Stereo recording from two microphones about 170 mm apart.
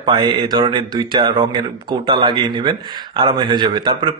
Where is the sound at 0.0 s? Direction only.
25° right (ahead or behind).